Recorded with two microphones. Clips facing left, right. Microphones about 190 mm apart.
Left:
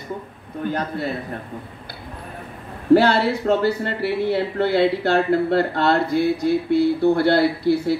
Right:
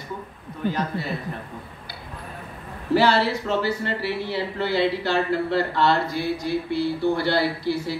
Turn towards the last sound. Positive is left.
turn(degrees=55)  # may be behind; listen again after turning